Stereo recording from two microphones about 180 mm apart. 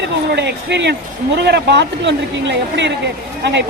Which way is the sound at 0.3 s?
70° right (ahead or behind).